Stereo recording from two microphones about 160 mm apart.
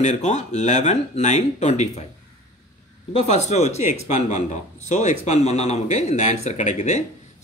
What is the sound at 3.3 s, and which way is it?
Speech, 45° left (ahead or behind).